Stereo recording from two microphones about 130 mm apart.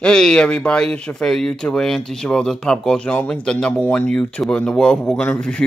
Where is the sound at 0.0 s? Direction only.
5° left (ahead or behind).